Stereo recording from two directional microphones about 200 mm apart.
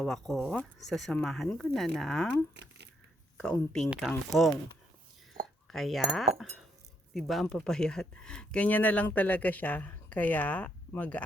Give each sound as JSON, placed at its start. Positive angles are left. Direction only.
{"t": 0.0, "sound": "speech", "side_deg": 0}
{"t": 2.6, "sound": "a sound", "side_deg": -60}
{"t": 3.3, "sound": "speech", "side_deg": 5}
{"t": 5.7, "sound": "speech", "side_deg": 0}